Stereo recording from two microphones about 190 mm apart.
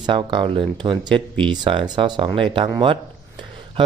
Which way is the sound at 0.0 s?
25° right (ahead or behind).